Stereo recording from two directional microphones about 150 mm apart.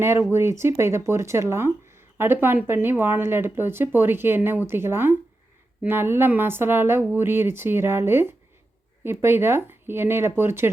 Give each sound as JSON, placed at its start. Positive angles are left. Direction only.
{"t": 0.0, "sound": "speech", "side_deg": -15}